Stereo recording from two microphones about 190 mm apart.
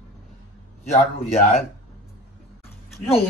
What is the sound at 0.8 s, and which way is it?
Speech, 35° left (ahead or behind).